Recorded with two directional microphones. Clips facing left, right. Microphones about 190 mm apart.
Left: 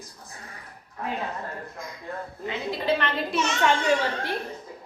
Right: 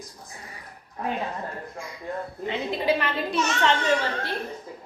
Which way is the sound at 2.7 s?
10° right (ahead or behind).